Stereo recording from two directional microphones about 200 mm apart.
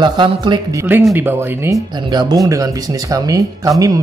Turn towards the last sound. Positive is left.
turn(degrees=-15)  # may be behind; listen again after turning